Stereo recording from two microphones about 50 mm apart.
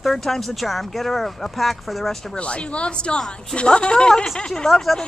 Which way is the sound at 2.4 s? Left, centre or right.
Left.